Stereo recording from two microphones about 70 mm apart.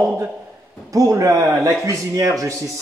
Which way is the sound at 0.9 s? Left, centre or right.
Right.